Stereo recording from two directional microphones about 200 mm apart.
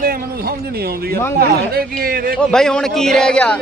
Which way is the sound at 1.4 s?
50° right (ahead or behind).